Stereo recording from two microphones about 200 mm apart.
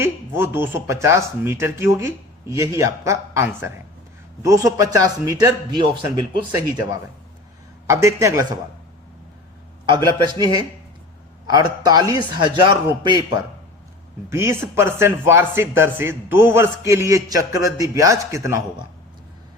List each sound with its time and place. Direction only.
0.0 s speech: 10° right (ahead or behind)
7.9 s speech: 15° right (ahead or behind)
9.8 s a man's voice: 25° right (ahead or behind)